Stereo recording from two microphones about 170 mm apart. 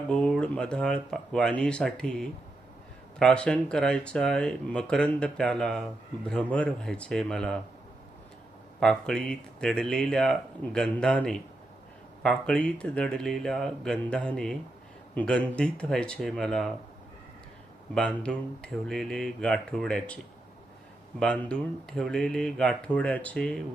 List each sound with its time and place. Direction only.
0.1 s speech: 5° left (ahead or behind)
8.8 s speech: 5° left (ahead or behind)
17.9 s speech: 5° left (ahead or behind)
21.2 s speech: 5° left (ahead or behind)